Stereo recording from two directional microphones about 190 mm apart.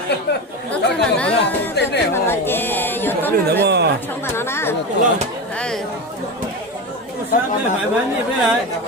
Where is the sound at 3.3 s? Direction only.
55° right (ahead or behind).